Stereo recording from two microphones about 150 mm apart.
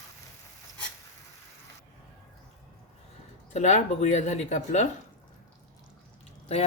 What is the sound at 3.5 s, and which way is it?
Speech, 50° left (ahead or behind).